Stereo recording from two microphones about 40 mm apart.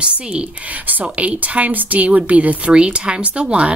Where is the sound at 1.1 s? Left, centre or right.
Right.